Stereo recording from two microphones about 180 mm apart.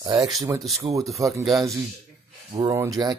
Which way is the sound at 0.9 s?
Centre (ahead or behind).